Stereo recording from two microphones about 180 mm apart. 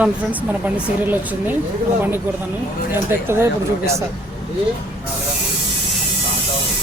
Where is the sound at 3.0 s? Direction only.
15° right (ahead or behind).